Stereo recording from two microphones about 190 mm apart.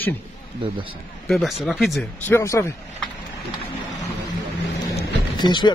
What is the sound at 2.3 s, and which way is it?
Speech, 15° left (ahead or behind).